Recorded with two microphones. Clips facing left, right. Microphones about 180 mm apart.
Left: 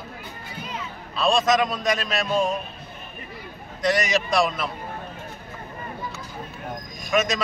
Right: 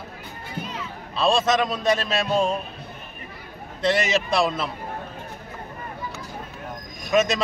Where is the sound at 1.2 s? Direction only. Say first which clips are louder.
Even; 25° right (ahead or behind).